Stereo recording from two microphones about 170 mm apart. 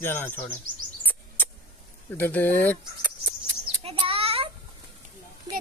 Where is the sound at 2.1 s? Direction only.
10° left (ahead or behind).